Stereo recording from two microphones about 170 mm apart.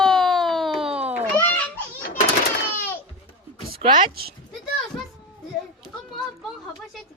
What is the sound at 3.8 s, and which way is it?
Speech, 25° right (ahead or behind).